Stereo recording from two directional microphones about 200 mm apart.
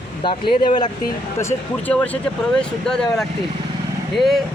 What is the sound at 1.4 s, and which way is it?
Speech, 10° left (ahead or behind).